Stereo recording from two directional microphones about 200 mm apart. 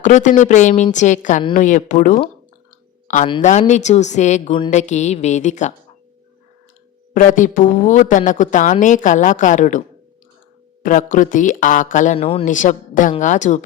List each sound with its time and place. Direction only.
0.0 s a woman's voice: 40° left (ahead or behind)
7.1 s a woman's voice: 40° left (ahead or behind)
10.8 s a woman's voice: 40° left (ahead or behind)
12.5 s a woman's voice: 40° left (ahead or behind)